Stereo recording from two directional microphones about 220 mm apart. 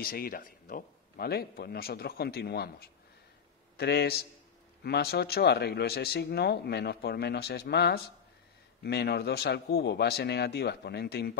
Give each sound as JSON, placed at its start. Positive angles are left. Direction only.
{"t": 0.0, "sound": "speech", "side_deg": 40}